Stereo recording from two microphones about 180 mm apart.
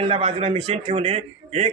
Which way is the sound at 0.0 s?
35° right (ahead or behind).